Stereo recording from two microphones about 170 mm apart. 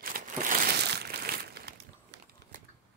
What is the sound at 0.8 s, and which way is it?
Crumpling, 75° right (ahead or behind).